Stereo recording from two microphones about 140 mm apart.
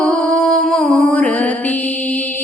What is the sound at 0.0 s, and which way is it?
Music, 5° left (ahead or behind).